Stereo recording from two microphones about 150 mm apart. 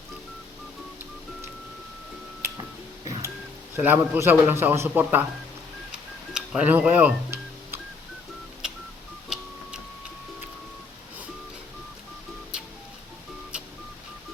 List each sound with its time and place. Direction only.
2.4 s music: 25° right (ahead or behind)
3.8 s a man's voice: 10° right (ahead or behind)
6.3 s music: 5° right (ahead or behind)